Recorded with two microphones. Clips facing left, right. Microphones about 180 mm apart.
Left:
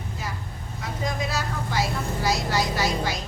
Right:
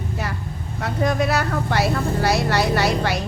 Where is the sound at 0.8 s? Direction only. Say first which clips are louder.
Right 8 dB; 65° right (ahead or behind).